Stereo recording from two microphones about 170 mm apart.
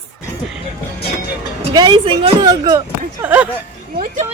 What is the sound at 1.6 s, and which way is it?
Speech, 25° right (ahead or behind).